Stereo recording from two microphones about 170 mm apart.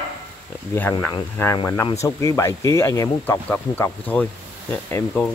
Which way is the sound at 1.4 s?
15° left (ahead or behind).